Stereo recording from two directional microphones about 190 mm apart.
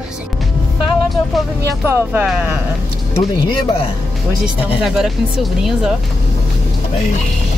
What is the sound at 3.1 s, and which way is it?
Speech, 30° left (ahead or behind).